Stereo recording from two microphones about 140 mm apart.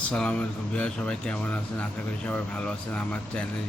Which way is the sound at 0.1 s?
5° left (ahead or behind).